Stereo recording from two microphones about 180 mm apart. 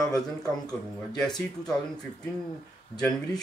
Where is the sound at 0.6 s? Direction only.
5° left (ahead or behind).